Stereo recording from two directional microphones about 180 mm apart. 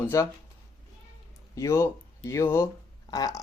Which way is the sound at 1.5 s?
15° left (ahead or behind).